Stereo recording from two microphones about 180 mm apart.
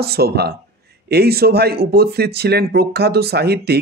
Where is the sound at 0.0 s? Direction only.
60° right (ahead or behind).